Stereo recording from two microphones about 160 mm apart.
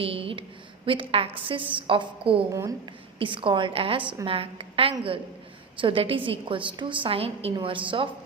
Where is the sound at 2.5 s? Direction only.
20° right (ahead or behind).